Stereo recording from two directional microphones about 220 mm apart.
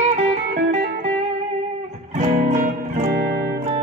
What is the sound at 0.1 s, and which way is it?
Music, 30° right (ahead or behind).